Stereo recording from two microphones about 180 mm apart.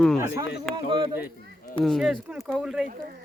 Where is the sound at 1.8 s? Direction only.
Centre (ahead or behind).